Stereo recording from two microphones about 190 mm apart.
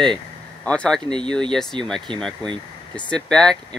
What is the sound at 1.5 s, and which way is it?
Speech, centre (ahead or behind).